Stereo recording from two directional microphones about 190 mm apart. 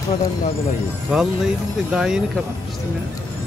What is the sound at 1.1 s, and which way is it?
Speech, 5° right (ahead or behind).